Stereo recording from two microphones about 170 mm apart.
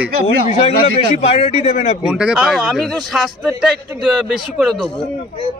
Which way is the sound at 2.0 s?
5° right (ahead or behind).